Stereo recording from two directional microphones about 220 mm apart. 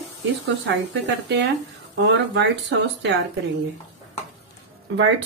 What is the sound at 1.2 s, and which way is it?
Speech, 50° right (ahead or behind).